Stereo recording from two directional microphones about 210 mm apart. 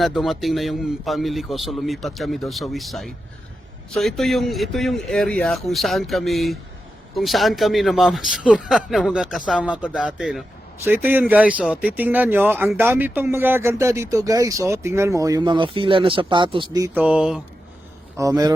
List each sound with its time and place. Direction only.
0.0 s a man's voice: centre (ahead or behind)
18.2 s speech: 15° right (ahead or behind)